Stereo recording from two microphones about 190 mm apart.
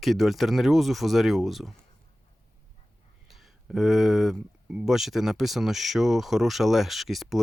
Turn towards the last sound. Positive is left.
turn(degrees=0)  # may be behind; listen again after turning